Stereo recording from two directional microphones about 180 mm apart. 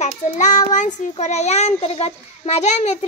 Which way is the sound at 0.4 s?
45° left (ahead or behind).